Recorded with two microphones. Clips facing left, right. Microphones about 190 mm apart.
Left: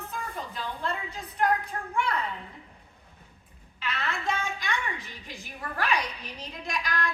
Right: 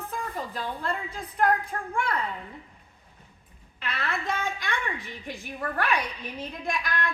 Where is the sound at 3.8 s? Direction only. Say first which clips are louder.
Right 1 dB; 55° right (ahead or behind).